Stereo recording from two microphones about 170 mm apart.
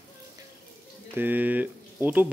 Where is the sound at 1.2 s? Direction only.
10° right (ahead or behind).